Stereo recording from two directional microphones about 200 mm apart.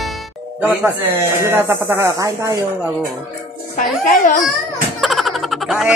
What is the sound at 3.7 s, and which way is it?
Speech, 40° left (ahead or behind).